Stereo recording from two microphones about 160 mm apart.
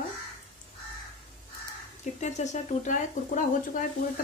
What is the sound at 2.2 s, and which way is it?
Speech, 45° left (ahead or behind).